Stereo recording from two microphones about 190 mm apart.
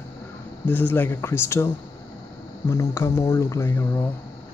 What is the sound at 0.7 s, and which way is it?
Speech, 10° left (ahead or behind).